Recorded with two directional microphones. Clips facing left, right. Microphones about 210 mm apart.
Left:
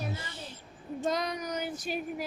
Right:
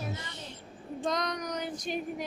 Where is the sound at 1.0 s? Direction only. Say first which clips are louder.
Left 1 dB; 5° left (ahead or behind).